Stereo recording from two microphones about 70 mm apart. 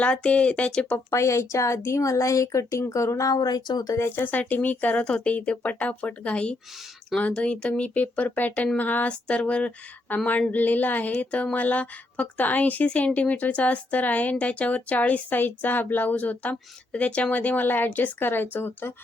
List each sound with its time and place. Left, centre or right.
0.0 s speech: centre
1.1 s speech: left
3.9 s speech: left